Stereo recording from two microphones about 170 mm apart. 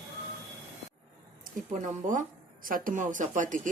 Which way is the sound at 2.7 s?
50° right (ahead or behind).